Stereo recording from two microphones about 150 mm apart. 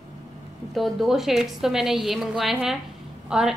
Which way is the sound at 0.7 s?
Centre (ahead or behind).